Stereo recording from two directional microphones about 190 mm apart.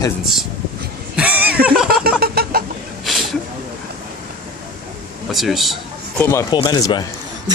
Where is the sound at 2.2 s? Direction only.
55° right (ahead or behind).